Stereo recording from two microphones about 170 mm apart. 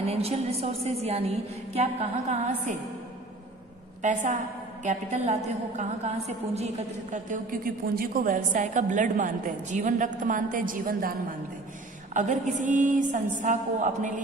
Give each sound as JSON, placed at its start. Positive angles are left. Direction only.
{"t": 0.0, "sound": "a woman's voice", "side_deg": -35}
{"t": 4.0, "sound": "a woman's voice", "side_deg": -45}
{"t": 12.1, "sound": "a woman's voice", "side_deg": -45}